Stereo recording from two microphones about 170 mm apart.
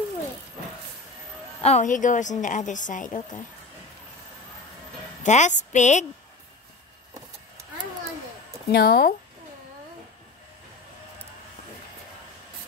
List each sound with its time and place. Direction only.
1.6 s a woman's voice: 45° left (ahead or behind)
5.2 s a woman's voice: 45° left (ahead or behind)
8.7 s speech: 65° left (ahead or behind)